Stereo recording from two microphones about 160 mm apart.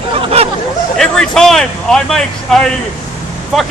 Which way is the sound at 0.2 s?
40° right (ahead or behind).